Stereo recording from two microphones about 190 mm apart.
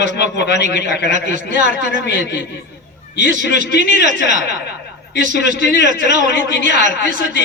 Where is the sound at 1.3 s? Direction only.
45° right (ahead or behind).